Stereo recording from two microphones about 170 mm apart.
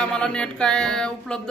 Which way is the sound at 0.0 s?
5° left (ahead or behind).